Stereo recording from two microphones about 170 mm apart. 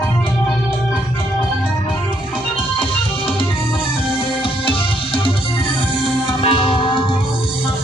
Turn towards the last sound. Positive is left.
turn(degrees=30)  # may be behind; listen again after turning